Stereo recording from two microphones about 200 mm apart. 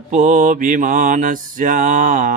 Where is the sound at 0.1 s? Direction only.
40° right (ahead or behind).